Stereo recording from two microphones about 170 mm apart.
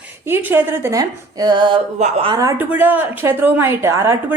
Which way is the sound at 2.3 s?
20° right (ahead or behind).